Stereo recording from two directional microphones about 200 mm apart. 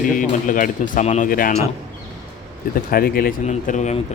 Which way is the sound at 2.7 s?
45° left (ahead or behind).